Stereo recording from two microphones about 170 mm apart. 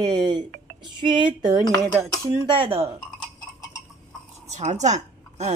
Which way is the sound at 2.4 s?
30° right (ahead or behind).